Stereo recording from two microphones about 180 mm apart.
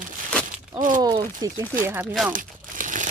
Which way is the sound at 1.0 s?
20° right (ahead or behind).